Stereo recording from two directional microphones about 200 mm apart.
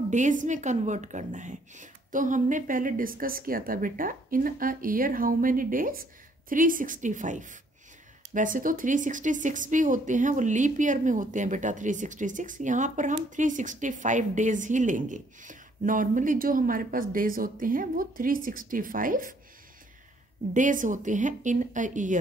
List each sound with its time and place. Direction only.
0.1 s a woman's voice: 40° right (ahead or behind)
20.5 s a woman's voice: 40° right (ahead or behind)